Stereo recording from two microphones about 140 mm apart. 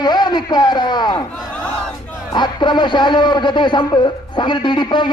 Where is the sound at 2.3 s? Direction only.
30° left (ahead or behind).